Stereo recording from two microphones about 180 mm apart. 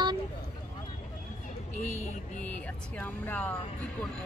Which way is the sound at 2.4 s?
5° left (ahead or behind).